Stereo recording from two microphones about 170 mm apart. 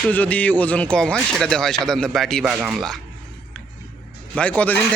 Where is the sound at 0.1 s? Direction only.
10° left (ahead or behind); by 2.8 s 5° right (ahead or behind).